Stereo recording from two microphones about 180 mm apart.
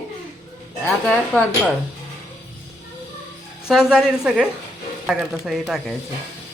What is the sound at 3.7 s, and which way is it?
Speech, 5° right (ahead or behind).